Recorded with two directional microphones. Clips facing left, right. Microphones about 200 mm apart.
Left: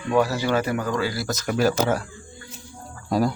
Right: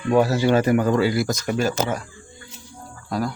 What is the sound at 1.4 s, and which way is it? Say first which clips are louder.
Speech: left 1 dB; 5° left (ahead or behind).